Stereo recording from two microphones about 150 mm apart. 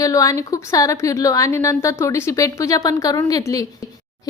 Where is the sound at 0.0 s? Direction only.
20° left (ahead or behind).